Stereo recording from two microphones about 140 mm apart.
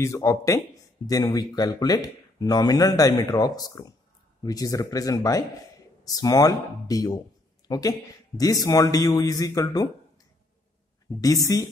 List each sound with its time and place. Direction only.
0.0 s speech: 20° left (ahead or behind)
11.1 s speech: 25° left (ahead or behind)